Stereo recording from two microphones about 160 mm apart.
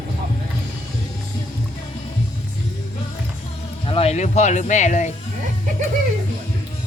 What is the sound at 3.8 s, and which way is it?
Speech, 35° left (ahead or behind).